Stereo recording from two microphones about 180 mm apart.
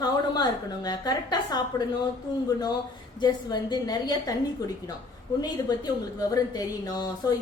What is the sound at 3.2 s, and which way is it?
A woman's voice, 20° left (ahead or behind).